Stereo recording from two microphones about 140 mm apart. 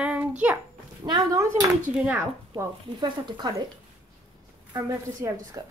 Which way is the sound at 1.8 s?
10° right (ahead or behind).